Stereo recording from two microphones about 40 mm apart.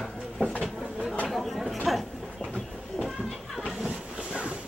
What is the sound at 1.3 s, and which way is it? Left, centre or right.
Chatter, centre.